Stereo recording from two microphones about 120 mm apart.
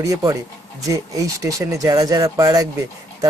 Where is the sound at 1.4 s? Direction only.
25° right (ahead or behind).